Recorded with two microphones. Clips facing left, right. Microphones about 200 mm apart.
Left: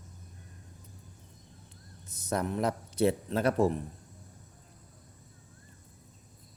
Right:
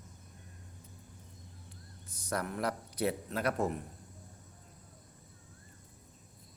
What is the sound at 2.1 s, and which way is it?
A man's voice, 20° left (ahead or behind).